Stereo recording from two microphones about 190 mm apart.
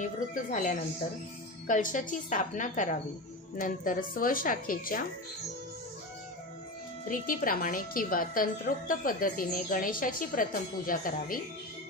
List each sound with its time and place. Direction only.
0.0 s a woman's voice: 40° left (ahead or behind)
7.1 s a woman's voice: 45° left (ahead or behind)